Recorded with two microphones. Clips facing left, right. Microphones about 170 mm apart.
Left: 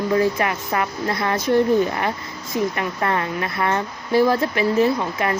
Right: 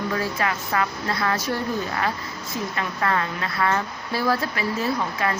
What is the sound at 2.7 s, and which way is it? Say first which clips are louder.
Speech: left 2 dB; 20° left (ahead or behind).